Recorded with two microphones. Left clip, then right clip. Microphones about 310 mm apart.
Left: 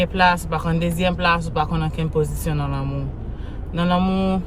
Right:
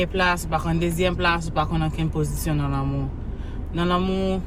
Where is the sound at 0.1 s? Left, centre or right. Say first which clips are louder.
Left 4 dB; centre.